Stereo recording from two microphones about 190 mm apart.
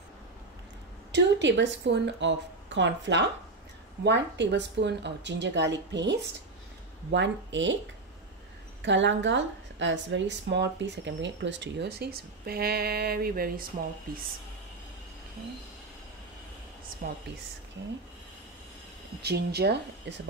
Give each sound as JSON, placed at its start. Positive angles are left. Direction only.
{"t": 1.1, "sound": "a woman's voice", "side_deg": -70}
{"t": 8.8, "sound": "a woman's voice", "side_deg": -70}
{"t": 17.0, "sound": "speech", "side_deg": -50}
{"t": 19.2, "sound": "speech", "side_deg": -60}